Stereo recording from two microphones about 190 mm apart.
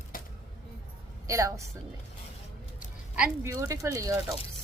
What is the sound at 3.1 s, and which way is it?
Speech, 10° right (ahead or behind).